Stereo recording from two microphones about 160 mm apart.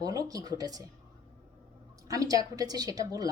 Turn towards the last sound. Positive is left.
turn(degrees=-25)  # may be behind; listen again after turning